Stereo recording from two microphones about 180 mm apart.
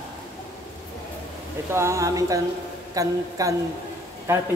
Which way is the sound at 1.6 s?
15° right (ahead or behind).